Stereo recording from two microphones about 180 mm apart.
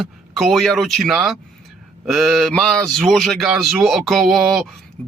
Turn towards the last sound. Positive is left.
turn(degrees=0)  # may be behind; listen again after turning